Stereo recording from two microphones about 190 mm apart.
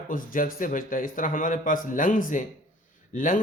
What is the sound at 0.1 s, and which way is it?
Speech, 45° left (ahead or behind).